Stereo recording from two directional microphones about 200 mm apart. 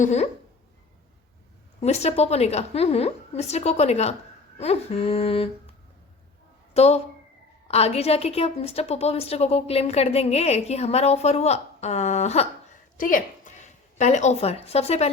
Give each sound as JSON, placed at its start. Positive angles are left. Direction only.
{"t": 0.0, "sound": "a woman's voice", "side_deg": 35}
{"t": 1.8, "sound": "a woman's voice", "side_deg": 35}
{"t": 4.5, "sound": "a sound", "side_deg": 30}
{"t": 6.7, "sound": "a woman's voice", "side_deg": 30}